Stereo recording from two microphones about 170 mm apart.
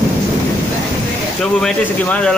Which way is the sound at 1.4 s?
5° left (ahead or behind).